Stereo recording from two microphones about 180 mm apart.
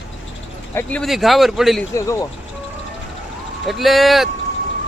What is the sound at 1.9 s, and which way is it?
Speech, 15° left (ahead or behind).